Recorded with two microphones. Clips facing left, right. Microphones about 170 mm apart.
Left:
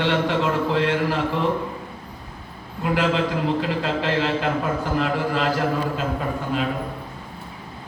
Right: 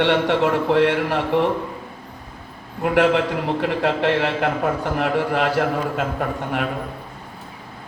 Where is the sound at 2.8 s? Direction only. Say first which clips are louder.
Right 4 dB; 65° right (ahead or behind).